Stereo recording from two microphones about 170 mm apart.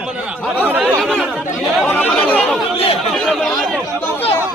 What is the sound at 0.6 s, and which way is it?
Speech, 10° right (ahead or behind).